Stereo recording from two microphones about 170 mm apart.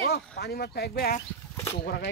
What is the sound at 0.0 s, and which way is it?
Speech, 65° left (ahead or behind).